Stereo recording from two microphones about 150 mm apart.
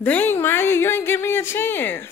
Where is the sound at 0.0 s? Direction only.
10° left (ahead or behind).